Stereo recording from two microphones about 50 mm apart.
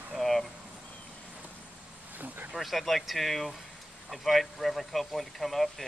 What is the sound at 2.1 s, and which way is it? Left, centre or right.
Speech, right.